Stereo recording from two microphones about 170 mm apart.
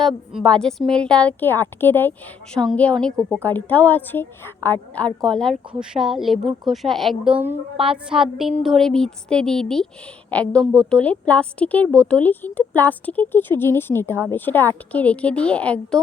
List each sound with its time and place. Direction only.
0.0 s a woman's voice: centre (ahead or behind)
7.8 s a sound: 30° right (ahead or behind)
8.1 s a woman's voice: centre (ahead or behind)